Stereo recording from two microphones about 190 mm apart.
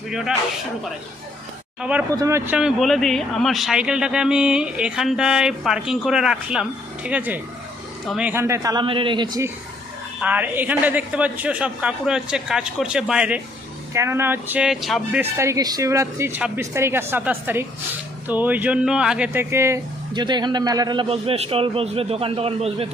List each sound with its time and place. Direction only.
0.1 s a man's voice: 5° right (ahead or behind)
1.8 s a woman's voice: 5° right (ahead or behind)
10.2 s a woman's voice: 10° right (ahead or behind)
15.2 s a woman's voice: 15° right (ahead or behind); by 22.9 s 30° right (ahead or behind)